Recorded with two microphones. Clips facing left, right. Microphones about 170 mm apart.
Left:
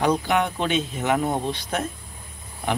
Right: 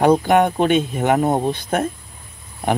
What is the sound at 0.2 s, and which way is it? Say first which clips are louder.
Speech: right 7 dB; 50° right (ahead or behind).